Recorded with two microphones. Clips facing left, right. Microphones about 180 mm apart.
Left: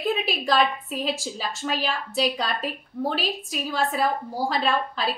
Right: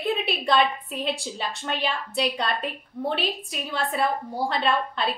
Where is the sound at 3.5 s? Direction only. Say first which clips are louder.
Left 3 dB; centre (ahead or behind).